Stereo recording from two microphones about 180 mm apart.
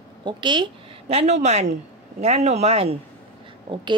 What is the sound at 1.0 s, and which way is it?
A woman's voice, 40° right (ahead or behind).